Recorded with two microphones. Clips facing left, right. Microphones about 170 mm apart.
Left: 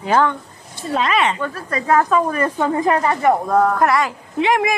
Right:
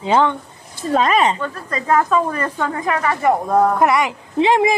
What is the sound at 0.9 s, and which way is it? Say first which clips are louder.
Speech: right 3 dB; 45° right (ahead or behind).